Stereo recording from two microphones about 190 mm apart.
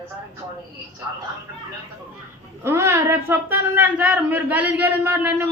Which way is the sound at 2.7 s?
15° right (ahead or behind).